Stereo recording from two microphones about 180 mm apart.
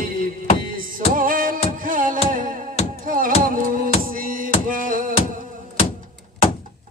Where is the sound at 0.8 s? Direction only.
50° right (ahead or behind).